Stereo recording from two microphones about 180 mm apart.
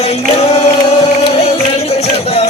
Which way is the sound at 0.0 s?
35° left (ahead or behind).